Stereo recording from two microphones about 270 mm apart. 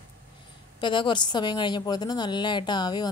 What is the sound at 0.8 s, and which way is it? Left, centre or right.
A woman's voice, centre.